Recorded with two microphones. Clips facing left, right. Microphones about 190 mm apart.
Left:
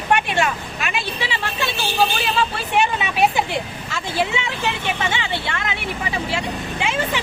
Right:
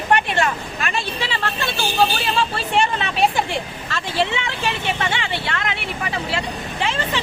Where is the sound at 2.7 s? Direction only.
10° left (ahead or behind).